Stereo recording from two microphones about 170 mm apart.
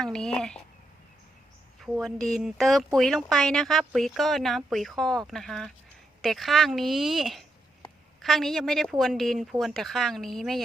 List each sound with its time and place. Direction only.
0.0 s speech: 5° left (ahead or behind)
1.8 s speech: centre (ahead or behind)